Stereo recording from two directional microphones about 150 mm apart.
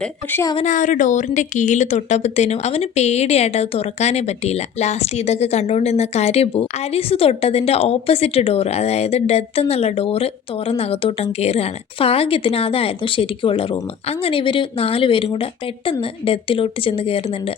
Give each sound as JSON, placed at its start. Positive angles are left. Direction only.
{"t": 0.0, "sound": "a woman's voice", "side_deg": 15}
{"t": 0.6, "sound": "speech", "side_deg": 60}